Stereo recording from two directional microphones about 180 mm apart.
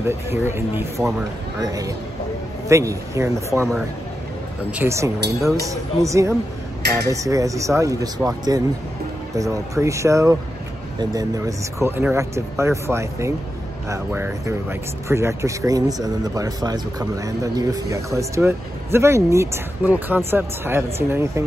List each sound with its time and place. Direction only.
0.0 s speech: 15° right (ahead or behind)
4.6 s speech: 10° right (ahead or behind)